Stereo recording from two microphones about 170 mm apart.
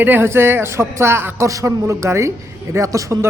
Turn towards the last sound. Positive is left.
turn(degrees=-15)  # may be behind; listen again after turning